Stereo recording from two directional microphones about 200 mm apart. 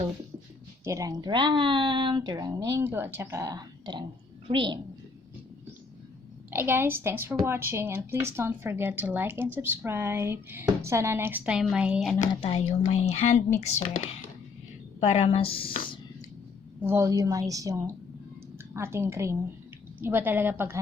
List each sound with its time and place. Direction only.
0.9 s speech: 15° right (ahead or behind)
6.5 s speech: 10° right (ahead or behind)
12.3 s speech: 25° left (ahead or behind)
15.0 s speech: 30° left (ahead or behind)
16.8 s speech: 15° right (ahead or behind)